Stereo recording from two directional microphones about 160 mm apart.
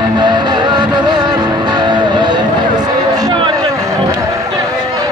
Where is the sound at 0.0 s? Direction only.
25° right (ahead or behind).